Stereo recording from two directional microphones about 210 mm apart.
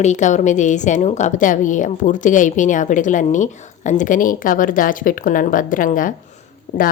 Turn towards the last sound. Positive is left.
turn(degrees=50)  # may be behind; listen again after turning